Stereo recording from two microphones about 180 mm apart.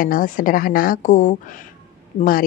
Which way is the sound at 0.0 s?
50° left (ahead or behind).